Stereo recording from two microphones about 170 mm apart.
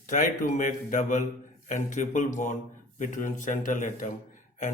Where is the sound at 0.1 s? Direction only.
50° left (ahead or behind).